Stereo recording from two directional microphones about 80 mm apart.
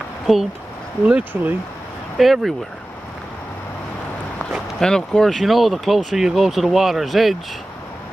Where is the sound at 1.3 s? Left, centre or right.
Right.